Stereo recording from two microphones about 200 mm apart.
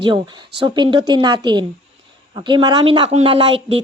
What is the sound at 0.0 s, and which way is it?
A woman's voice, 25° right (ahead or behind).